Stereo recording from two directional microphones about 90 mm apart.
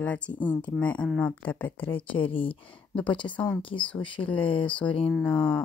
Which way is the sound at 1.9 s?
80° left.